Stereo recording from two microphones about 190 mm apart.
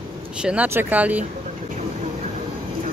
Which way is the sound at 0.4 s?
5° right (ahead or behind).